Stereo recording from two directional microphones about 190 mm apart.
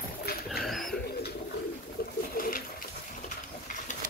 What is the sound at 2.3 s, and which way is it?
Bird, 50° left (ahead or behind).